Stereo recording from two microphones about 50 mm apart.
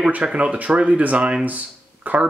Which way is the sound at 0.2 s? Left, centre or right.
Right.